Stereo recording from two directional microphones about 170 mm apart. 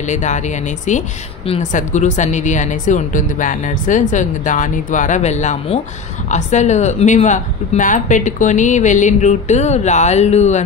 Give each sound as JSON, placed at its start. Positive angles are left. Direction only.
{"t": 0.0, "sound": "speech", "side_deg": 45}
{"t": 1.5, "sound": "speech", "side_deg": 50}